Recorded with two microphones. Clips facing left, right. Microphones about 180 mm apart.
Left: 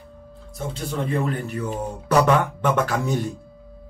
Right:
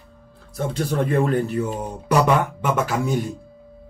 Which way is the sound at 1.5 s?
30° right (ahead or behind).